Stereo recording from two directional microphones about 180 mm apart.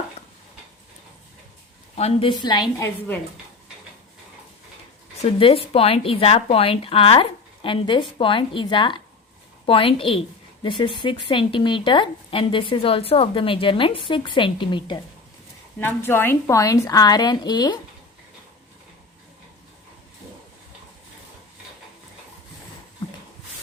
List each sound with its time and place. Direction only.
2.0 s a woman's voice: 35° left (ahead or behind); by 3.2 s 15° left (ahead or behind)
5.2 s a woman's voice: 30° left (ahead or behind)
15.8 s a woman's voice: 10° left (ahead or behind)